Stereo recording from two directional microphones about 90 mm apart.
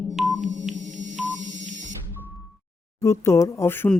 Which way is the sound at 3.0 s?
35° left (ahead or behind).